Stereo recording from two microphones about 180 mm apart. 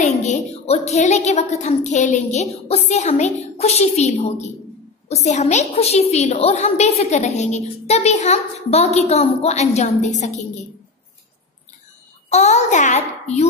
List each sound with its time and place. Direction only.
0.0 s a woman's voice: 40° left (ahead or behind)
12.3 s a woman's voice: 40° left (ahead or behind)